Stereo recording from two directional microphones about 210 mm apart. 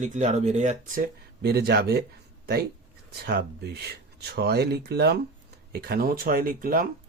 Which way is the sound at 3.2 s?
50° right (ahead or behind).